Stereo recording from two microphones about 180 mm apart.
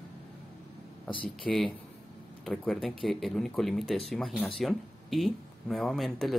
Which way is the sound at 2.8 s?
Centre (ahead or behind).